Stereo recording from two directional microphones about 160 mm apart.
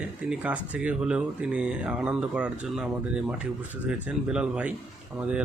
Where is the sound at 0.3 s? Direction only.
10° right (ahead or behind).